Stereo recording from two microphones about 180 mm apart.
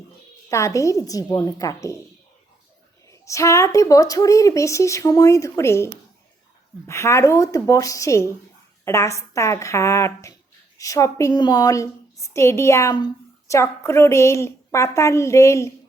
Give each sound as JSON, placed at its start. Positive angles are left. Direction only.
{"t": 0.5, "sound": "a woman's voice", "side_deg": 15}
{"t": 3.1, "sound": "speech", "side_deg": 15}